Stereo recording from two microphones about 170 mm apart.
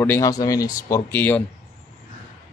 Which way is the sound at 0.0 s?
15° left (ahead or behind).